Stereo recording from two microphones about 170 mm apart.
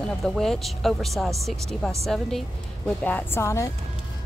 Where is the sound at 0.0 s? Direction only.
5° left (ahead or behind).